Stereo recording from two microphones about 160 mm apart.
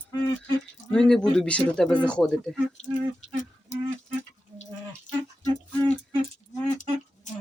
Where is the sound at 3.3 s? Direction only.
50° left (ahead or behind).